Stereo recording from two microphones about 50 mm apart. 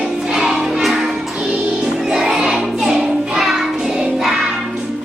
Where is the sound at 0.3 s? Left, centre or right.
Centre.